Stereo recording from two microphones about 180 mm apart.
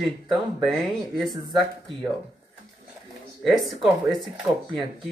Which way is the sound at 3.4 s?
Centre (ahead or behind).